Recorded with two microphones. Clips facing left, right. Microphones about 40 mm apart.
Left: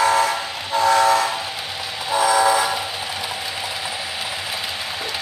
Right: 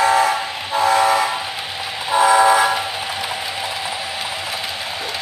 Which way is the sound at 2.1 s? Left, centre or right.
Right.